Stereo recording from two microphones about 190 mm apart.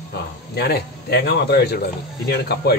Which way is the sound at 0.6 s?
55° left (ahead or behind).